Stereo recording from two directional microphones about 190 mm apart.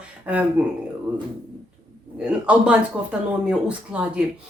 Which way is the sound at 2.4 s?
5° right (ahead or behind).